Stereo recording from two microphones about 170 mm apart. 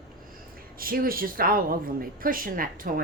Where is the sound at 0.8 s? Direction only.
55° right (ahead or behind).